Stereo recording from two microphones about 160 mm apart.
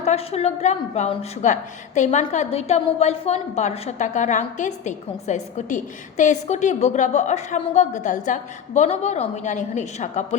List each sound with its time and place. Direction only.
0.0 s a woman's voice: 40° left (ahead or behind)